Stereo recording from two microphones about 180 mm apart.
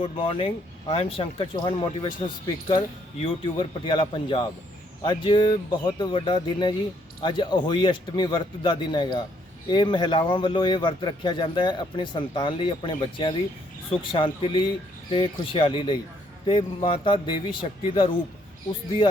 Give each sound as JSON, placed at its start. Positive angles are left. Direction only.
{"t": 0.0, "sound": "speech", "side_deg": 30}